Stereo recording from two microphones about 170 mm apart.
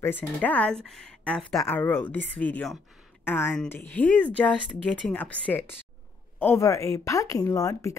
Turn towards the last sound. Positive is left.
turn(degrees=20)  # may be behind; listen again after turning